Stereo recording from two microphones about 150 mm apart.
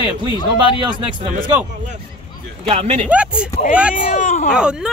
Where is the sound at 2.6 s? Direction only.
40° right (ahead or behind).